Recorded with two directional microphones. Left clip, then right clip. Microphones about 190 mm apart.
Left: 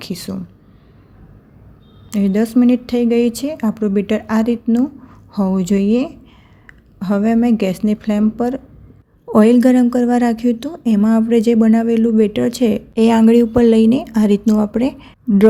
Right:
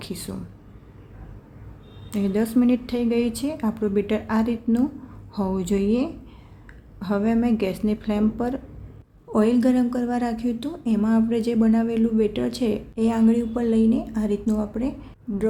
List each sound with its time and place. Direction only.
0.0 s speech: 30° left (ahead or behind)
2.0 s a woman's voice: 30° left (ahead or behind)